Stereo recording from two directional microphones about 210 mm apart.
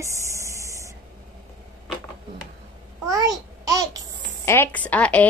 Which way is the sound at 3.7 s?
15° right (ahead or behind).